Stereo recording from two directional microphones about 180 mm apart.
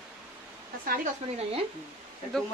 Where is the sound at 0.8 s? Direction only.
50° right (ahead or behind).